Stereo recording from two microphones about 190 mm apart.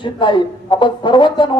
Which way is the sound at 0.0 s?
25° left (ahead or behind).